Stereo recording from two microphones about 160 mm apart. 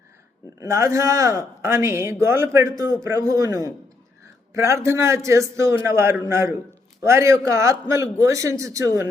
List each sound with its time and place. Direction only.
0.6 s a man's voice: 20° right (ahead or behind)